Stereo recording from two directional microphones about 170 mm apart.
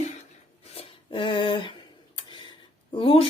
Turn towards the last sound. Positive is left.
turn(degrees=30)  # may be behind; listen again after turning